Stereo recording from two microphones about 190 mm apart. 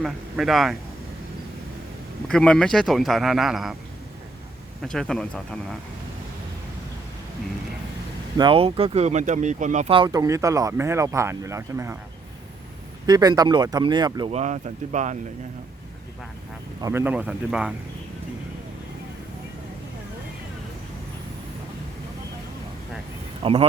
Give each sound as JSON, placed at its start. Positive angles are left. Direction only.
{"t": 0.0, "sound": "speech", "side_deg": 0}
{"t": 2.2, "sound": "speech", "side_deg": 5}
{"t": 4.8, "sound": "speech", "side_deg": 5}
{"t": 8.4, "sound": "speech", "side_deg": -30}
{"t": 9.9, "sound": "speech", "side_deg": -20}
{"t": 13.1, "sound": "speech", "side_deg": -20}
{"t": 14.3, "sound": "speech", "side_deg": -35}
{"t": 16.8, "sound": "speech", "side_deg": -10}
{"t": 23.4, "sound": "speech", "side_deg": -30}